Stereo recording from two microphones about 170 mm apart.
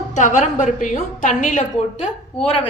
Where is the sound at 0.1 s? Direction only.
45° left (ahead or behind).